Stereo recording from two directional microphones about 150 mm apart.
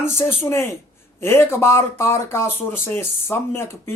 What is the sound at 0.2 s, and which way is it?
Speech, 15° left (ahead or behind).